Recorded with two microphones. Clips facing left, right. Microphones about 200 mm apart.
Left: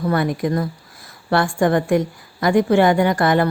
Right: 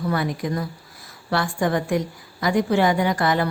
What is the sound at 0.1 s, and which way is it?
A woman's voice, 55° left (ahead or behind).